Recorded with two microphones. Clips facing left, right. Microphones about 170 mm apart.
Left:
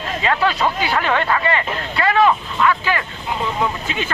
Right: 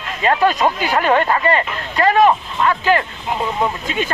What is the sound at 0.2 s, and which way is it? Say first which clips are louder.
Speech: right 4 dB; 45° right (ahead or behind).